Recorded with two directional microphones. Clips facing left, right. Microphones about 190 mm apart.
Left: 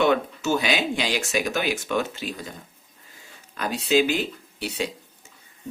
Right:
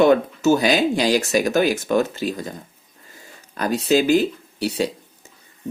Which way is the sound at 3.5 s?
45° right (ahead or behind).